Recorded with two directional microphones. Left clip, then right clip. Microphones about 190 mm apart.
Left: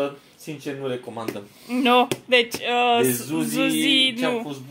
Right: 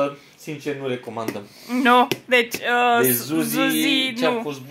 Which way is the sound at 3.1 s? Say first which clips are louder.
Right 2 dB; 30° right (ahead or behind).